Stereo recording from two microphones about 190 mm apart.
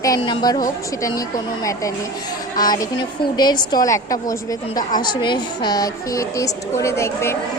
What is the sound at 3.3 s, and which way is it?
A woman's voice, 20° left (ahead or behind).